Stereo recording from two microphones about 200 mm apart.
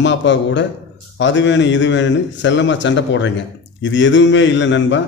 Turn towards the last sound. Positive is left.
turn(degrees=65)  # may be behind; listen again after turning